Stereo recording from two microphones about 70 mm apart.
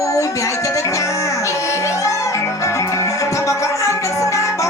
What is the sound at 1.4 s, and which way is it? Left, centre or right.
Music, left.